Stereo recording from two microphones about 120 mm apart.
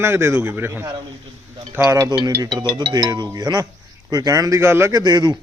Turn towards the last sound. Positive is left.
turn(degrees=-35)  # may be behind; listen again after turning